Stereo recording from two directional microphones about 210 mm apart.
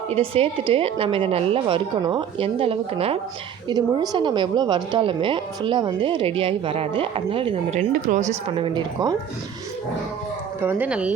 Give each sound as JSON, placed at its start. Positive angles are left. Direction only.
{"t": 0.1, "sound": "a woman's voice", "side_deg": -25}
{"t": 7.8, "sound": "a woman's voice", "side_deg": -35}
{"t": 10.6, "sound": "speech", "side_deg": -10}